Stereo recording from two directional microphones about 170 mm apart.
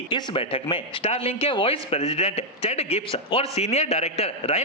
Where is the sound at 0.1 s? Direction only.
30° left (ahead or behind).